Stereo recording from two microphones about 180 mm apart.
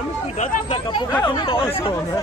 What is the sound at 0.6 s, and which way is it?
Speech, 25° left (ahead or behind).